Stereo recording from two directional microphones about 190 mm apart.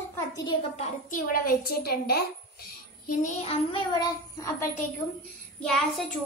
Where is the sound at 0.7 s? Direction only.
45° left (ahead or behind).